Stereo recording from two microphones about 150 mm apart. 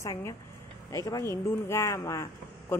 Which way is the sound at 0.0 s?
20° left (ahead or behind).